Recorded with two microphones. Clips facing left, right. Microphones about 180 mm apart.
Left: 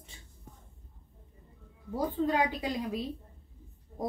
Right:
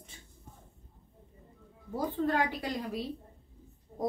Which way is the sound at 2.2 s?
15° left (ahead or behind).